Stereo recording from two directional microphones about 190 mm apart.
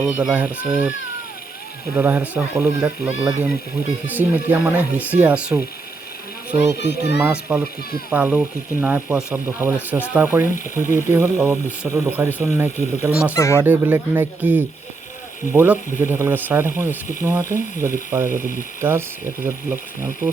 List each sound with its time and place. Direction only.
0.0 s speech: 5° right (ahead or behind)
2.0 s speech: 10° right (ahead or behind)
6.7 s a child's voice: 65° left (ahead or behind)
7.5 s speech: 5° right (ahead or behind)
13.3 s speech: 15° left (ahead or behind)
13.6 s speech: 10° right (ahead or behind)